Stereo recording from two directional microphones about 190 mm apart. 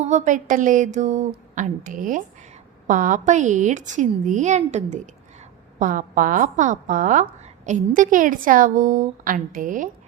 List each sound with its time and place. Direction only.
0.0 s a woman's voice: 35° right (ahead or behind)